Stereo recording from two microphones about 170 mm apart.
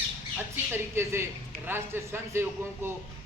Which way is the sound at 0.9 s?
15° right (ahead or behind).